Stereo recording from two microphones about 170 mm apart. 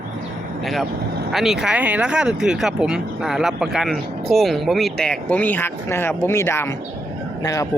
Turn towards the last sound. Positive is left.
turn(degrees=20)  # may be behind; listen again after turning